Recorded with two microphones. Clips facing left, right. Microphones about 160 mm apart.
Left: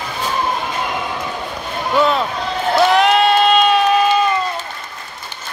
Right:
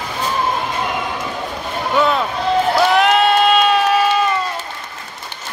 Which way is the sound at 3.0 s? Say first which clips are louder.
Even; centre (ahead or behind).